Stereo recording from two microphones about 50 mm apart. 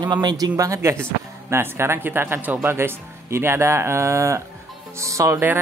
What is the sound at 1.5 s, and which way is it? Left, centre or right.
A woman's voice, right.